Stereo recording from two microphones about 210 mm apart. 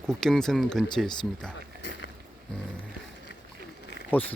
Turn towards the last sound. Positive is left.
turn(degrees=10)  # may be behind; listen again after turning